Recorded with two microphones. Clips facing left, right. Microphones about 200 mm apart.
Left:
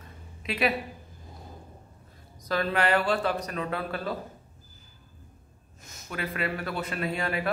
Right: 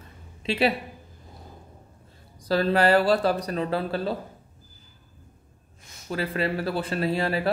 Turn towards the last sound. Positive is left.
turn(degrees=-30)  # may be behind; listen again after turning